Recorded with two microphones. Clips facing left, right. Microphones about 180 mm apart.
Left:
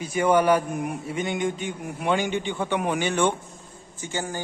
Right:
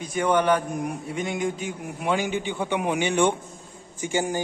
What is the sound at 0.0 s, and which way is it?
A man's voice, 5° left (ahead or behind).